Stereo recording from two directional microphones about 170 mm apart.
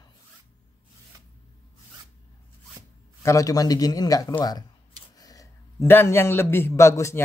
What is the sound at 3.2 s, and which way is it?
A man's voice, 20° left (ahead or behind).